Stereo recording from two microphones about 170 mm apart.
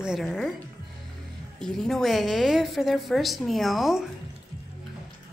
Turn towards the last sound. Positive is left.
turn(degrees=0)  # may be behind; listen again after turning